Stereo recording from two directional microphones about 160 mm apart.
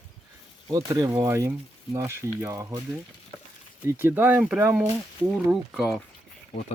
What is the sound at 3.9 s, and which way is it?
Speech, 15° right (ahead or behind).